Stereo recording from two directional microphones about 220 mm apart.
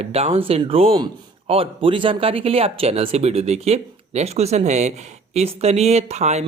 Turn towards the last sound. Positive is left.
turn(degrees=-30)  # may be behind; listen again after turning